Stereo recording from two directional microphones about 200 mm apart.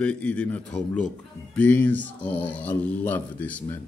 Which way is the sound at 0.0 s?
5° left (ahead or behind).